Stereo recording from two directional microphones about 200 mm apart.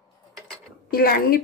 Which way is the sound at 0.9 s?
50° left (ahead or behind).